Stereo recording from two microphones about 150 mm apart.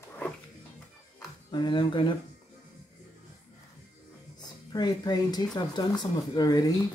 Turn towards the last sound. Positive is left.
turn(degrees=25)  # may be behind; listen again after turning